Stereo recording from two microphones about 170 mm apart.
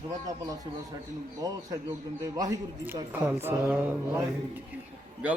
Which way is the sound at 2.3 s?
20° right (ahead or behind).